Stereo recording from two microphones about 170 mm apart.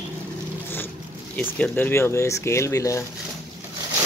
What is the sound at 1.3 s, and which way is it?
Speech, 10° left (ahead or behind).